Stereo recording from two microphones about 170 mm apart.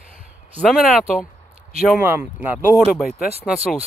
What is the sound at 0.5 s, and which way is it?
Speech, 5° left (ahead or behind).